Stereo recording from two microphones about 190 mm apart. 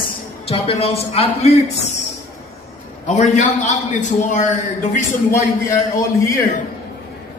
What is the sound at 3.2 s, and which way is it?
Speech, 40° left (ahead or behind).